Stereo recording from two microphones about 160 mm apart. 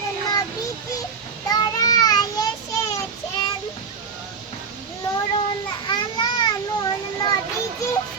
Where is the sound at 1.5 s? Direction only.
25° left (ahead or behind).